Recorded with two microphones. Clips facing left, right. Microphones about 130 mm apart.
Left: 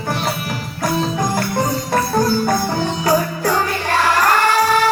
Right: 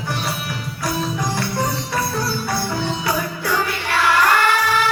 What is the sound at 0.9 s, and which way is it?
Music, 50° left (ahead or behind).